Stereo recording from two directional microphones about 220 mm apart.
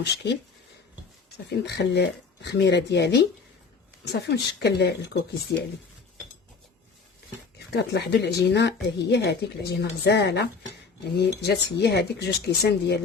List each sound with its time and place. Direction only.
0.0 s a woman's voice: 50° left (ahead or behind)
1.5 s a woman's voice: 50° left (ahead or behind)
7.7 s a woman's voice: 50° left (ahead or behind)